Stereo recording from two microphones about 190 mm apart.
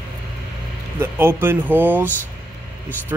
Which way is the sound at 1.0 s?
10° right (ahead or behind).